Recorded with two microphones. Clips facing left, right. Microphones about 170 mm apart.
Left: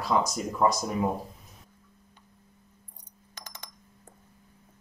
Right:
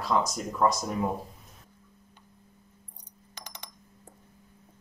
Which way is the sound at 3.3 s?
15° right (ahead or behind).